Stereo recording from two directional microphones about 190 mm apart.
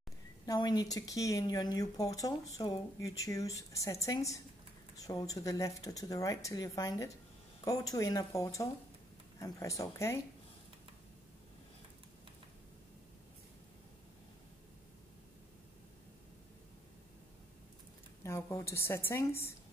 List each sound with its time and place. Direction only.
0.5 s speech: 20° left (ahead or behind)
18.2 s speech: 15° left (ahead or behind)